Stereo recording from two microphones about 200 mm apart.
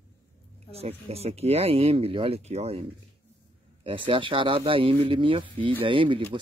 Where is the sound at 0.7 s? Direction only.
30° right (ahead or behind).